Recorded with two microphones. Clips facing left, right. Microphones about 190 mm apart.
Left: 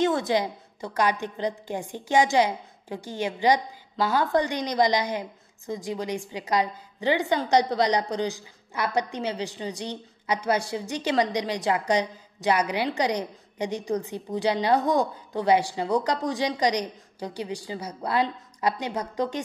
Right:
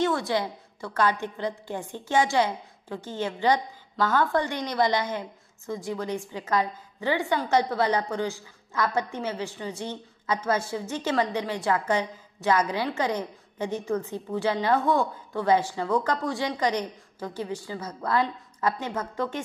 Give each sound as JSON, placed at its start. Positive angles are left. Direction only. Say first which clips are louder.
{"t": 0.0, "sound": "a woman's voice", "louder": "left 2 dB", "side_deg": 20}